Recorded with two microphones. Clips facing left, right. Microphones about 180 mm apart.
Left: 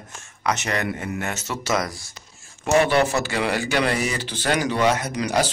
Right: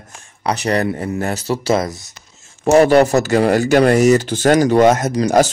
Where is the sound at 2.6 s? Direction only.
40° right (ahead or behind).